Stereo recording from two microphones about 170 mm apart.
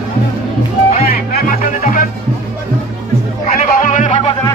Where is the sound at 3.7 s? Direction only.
50° left (ahead or behind).